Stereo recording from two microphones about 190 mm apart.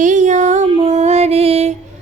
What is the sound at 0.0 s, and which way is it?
Music, 40° right (ahead or behind).